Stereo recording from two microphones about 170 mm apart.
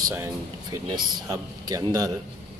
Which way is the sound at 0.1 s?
20° right (ahead or behind).